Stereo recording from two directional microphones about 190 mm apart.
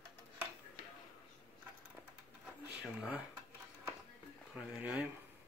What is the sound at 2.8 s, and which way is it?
Speech, 5° right (ahead or behind).